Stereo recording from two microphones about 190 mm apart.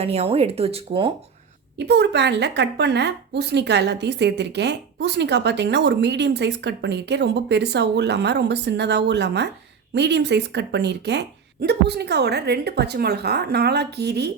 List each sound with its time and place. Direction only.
0.0 s speech: 30° right (ahead or behind)
1.9 s a woman's voice: 65° right (ahead or behind)